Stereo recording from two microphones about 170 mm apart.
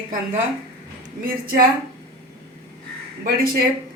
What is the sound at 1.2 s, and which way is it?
Speech, 60° right (ahead or behind).